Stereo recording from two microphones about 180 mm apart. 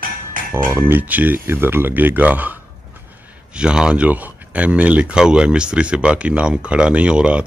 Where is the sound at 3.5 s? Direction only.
5° right (ahead or behind).